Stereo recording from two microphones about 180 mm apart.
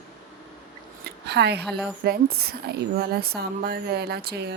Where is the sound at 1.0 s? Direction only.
65° right (ahead or behind).